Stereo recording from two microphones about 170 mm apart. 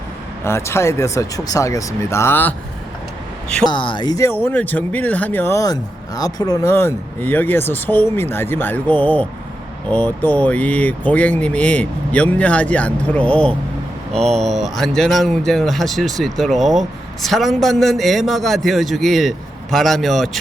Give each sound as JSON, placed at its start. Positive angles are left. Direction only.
{"t": 0.4, "sound": "speech", "side_deg": 15}
{"t": 3.7, "sound": "speech", "side_deg": 30}